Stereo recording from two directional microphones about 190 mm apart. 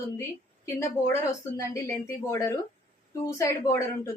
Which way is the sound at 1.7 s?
15° left (ahead or behind).